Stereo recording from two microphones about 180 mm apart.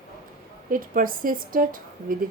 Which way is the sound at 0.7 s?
50° right (ahead or behind).